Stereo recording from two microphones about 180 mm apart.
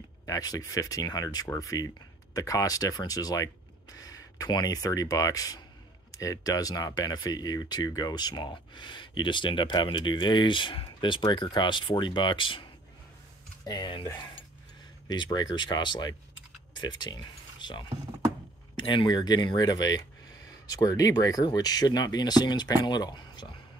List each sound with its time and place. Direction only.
0.3 s speech: 20° left (ahead or behind)
13.7 s speech: 25° left (ahead or behind)